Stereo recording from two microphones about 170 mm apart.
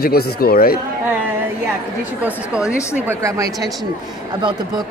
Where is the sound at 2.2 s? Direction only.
5° right (ahead or behind).